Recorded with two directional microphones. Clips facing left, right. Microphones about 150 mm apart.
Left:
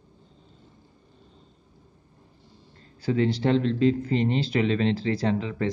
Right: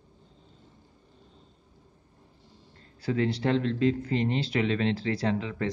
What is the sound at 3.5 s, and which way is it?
Speech, 25° left (ahead or behind).